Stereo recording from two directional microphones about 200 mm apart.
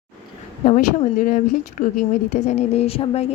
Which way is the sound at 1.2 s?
40° left (ahead or behind).